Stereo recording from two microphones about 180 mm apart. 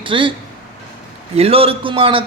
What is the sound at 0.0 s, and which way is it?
Speech, 30° right (ahead or behind).